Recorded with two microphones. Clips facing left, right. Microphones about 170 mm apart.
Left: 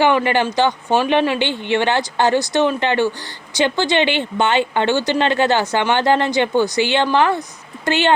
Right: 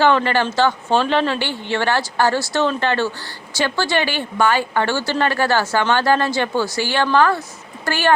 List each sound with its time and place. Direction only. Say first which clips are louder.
0.0 s speech: left 1 dB; 15° left (ahead or behind)